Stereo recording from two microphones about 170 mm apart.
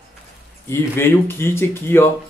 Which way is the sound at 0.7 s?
15° left (ahead or behind).